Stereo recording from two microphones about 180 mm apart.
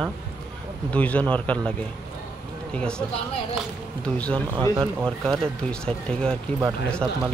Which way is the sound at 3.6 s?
5° left (ahead or behind).